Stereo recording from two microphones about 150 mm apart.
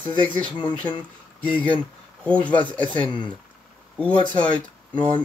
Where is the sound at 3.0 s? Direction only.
30° left (ahead or behind).